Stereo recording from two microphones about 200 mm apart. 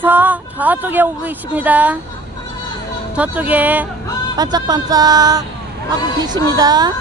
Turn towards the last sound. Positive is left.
turn(degrees=-20)  # may be behind; listen again after turning